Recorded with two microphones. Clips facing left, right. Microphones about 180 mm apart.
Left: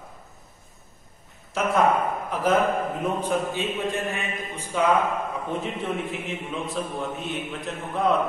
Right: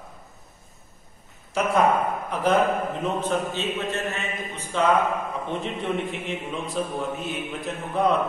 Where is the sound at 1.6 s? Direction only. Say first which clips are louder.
Right 1 dB; centre (ahead or behind).